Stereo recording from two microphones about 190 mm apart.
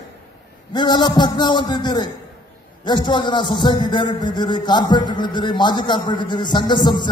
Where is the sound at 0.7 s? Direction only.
20° left (ahead or behind).